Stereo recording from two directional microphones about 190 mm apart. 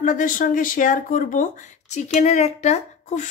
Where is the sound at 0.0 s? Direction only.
45° left (ahead or behind).